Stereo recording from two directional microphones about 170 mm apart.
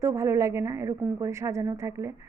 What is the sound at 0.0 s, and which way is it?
A woman's voice, 15° right (ahead or behind).